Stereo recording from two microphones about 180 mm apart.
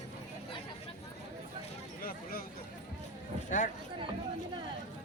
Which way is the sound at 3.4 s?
45° left (ahead or behind).